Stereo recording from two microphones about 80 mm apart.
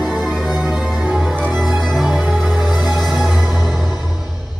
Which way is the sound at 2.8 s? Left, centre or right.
Centre.